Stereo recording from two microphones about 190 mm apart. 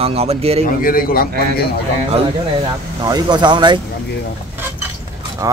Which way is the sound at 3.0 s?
20° right (ahead or behind).